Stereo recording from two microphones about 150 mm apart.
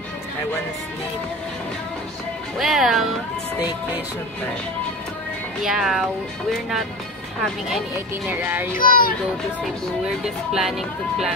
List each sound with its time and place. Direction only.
2.6 s speech: centre (ahead or behind)
5.6 s speech: 5° right (ahead or behind)
8.3 s music: 15° right (ahead or behind)
8.7 s speech: 70° left (ahead or behind)
10.2 s speech: centre (ahead or behind)